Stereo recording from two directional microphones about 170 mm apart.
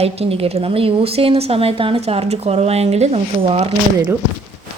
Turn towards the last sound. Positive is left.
turn(degrees=-35)  # may be behind; listen again after turning